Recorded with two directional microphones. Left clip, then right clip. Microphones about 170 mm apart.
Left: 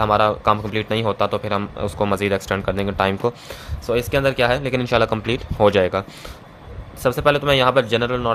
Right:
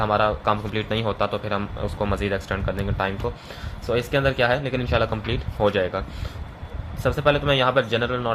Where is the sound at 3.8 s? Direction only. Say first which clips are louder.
Left 3 dB; 35° left (ahead or behind).